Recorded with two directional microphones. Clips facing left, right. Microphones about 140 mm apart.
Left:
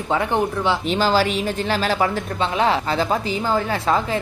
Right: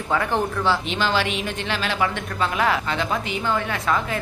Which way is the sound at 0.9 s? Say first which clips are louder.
Left 4 dB; 40° left (ahead or behind).